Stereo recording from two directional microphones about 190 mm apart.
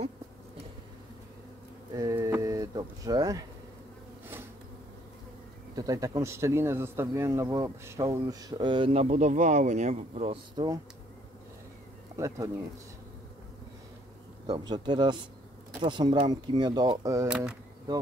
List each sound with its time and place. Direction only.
2.0 s speech: 15° right (ahead or behind)
5.8 s a man's voice: 20° right (ahead or behind)
14.4 s a man's voice: 25° right (ahead or behind)
17.3 s speech: 5° right (ahead or behind)